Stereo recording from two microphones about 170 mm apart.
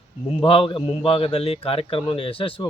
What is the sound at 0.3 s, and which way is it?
A man's voice, 30° left (ahead or behind).